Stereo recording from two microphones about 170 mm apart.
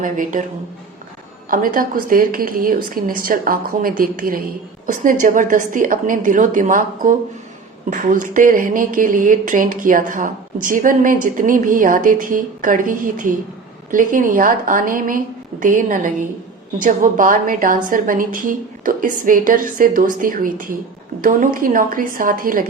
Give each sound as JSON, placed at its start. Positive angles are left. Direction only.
{"t": 0.0, "sound": "speech", "side_deg": -50}
{"t": 1.5, "sound": "a woman's voice", "side_deg": -55}